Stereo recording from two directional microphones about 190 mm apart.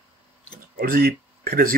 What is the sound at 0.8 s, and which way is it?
Speech, 50° right (ahead or behind).